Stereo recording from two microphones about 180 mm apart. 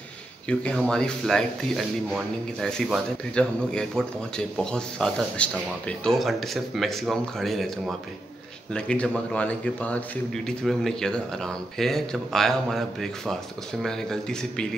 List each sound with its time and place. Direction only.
0.5 s a man's voice: 5° left (ahead or behind)